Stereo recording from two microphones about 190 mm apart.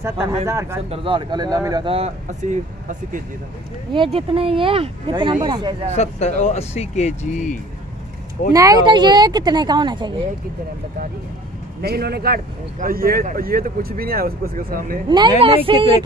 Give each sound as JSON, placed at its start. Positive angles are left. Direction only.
{"t": 0.5, "sound": "speech", "side_deg": -15}
{"t": 0.8, "sound": "speech", "side_deg": -30}
{"t": 3.9, "sound": "speech", "side_deg": -25}
{"t": 5.9, "sound": "speech", "side_deg": 35}
{"t": 8.5, "sound": "speech", "side_deg": -20}
{"t": 11.8, "sound": "a man's voice", "side_deg": -55}
{"t": 15.0, "sound": "speech", "side_deg": -25}